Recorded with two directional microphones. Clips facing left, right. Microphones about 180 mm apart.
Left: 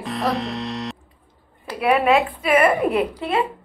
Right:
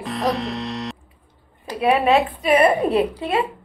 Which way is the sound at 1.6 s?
25° right (ahead or behind).